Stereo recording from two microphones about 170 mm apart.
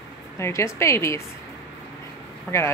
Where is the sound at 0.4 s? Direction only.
15° left (ahead or behind).